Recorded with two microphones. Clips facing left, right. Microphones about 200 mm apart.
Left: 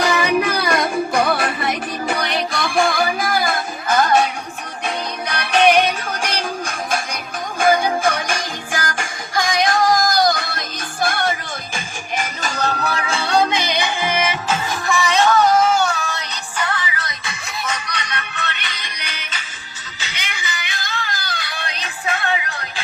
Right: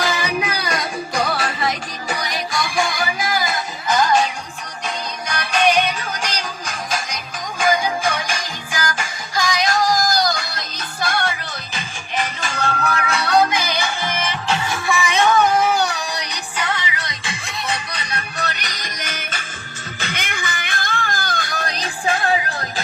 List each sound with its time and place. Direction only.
0.3 s music: 55° left (ahead or behind)
5.3 s music: 60° left (ahead or behind); by 14.3 s 10° left (ahead or behind)
15.2 s music: 15° right (ahead or behind); by 22.6 s 35° right (ahead or behind)